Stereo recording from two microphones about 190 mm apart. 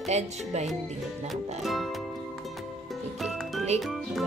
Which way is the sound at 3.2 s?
Centre (ahead or behind).